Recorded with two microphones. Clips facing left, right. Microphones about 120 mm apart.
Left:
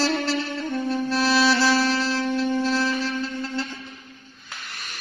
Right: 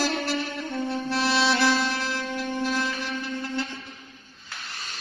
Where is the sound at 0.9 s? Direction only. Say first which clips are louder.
Left 4 dB; 25° right (ahead or behind).